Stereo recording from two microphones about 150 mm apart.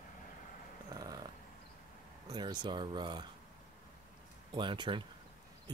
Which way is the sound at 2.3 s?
30° right (ahead or behind).